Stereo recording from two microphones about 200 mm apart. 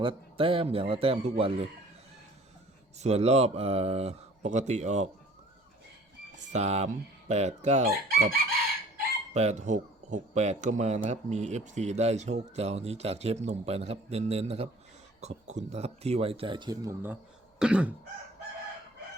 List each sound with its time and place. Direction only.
0.0 s speech: 25° right (ahead or behind)
3.0 s speech: 30° right (ahead or behind)
6.5 s speech: 35° right (ahead or behind)
7.9 s chicken: 50° right (ahead or behind)
9.3 s speech: 35° right (ahead or behind); by 17.2 s 15° right (ahead or behind)
17.6 s cough: 5° right (ahead or behind)